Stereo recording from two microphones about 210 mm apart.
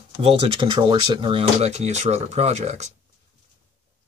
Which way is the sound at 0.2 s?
25° right (ahead or behind).